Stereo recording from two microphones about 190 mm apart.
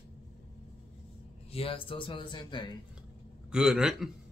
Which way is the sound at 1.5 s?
30° left (ahead or behind).